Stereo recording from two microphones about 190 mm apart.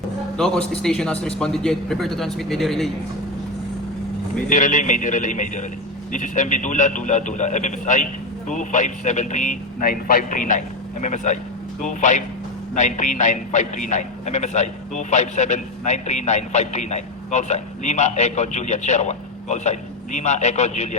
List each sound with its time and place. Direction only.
0.3 s a man's voice: 5° left (ahead or behind)
4.4 s a man's voice: 45° left (ahead or behind)